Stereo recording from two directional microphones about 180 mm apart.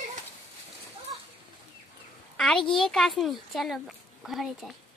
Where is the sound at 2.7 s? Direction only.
Centre (ahead or behind).